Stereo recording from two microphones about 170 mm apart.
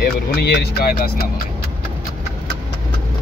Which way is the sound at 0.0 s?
70° left (ahead or behind).